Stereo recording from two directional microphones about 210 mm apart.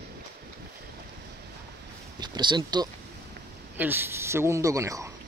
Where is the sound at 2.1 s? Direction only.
20° right (ahead or behind).